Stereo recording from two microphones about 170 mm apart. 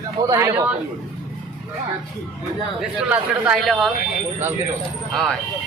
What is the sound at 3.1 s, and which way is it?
Speech, 5° right (ahead or behind).